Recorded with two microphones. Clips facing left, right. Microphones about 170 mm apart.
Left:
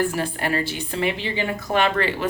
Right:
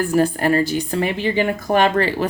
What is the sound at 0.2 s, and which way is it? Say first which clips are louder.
Speech: right 8 dB; 40° right (ahead or behind).